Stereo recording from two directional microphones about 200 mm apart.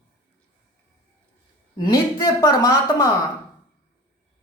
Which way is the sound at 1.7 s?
15° left (ahead or behind).